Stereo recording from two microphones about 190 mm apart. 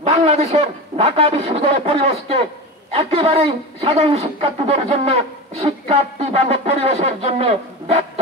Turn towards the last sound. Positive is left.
turn(degrees=-30)  # may be behind; listen again after turning